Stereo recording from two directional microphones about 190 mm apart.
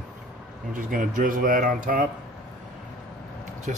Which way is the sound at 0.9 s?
45° right (ahead or behind).